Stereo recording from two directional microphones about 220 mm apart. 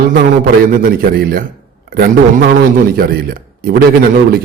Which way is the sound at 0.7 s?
40° right (ahead or behind).